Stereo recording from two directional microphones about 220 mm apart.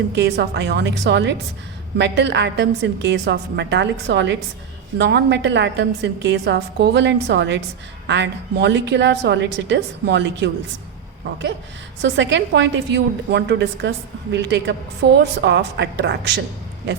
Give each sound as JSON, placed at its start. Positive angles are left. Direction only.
{"t": 0.1, "sound": "a woman's voice", "side_deg": -50}
{"t": 12.0, "sound": "a woman's voice", "side_deg": -55}